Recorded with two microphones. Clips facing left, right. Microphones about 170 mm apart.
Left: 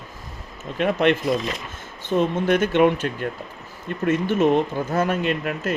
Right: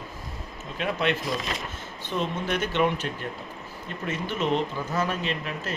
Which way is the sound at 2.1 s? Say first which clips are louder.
Left 8 dB; 45° left (ahead or behind).